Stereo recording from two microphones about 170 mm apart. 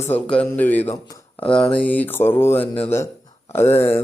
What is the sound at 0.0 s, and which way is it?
Speech, 10° left (ahead or behind).